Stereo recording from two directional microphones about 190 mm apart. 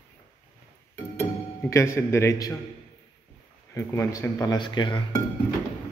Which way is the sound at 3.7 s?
15° left (ahead or behind).